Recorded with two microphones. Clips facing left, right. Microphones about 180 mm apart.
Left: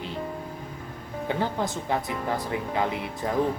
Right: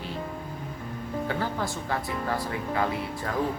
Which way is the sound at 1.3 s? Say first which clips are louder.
Left 5 dB; 20° left (ahead or behind).